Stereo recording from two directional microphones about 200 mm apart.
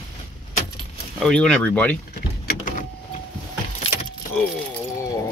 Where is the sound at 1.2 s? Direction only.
5° left (ahead or behind).